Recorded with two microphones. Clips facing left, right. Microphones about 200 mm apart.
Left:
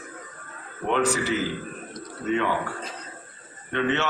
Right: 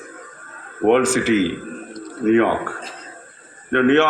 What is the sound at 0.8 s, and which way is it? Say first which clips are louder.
Speech: right 9 dB; 70° right (ahead or behind).